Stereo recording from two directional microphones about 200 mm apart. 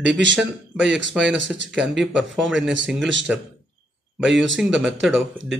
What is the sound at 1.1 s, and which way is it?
Speech, 5° right (ahead or behind).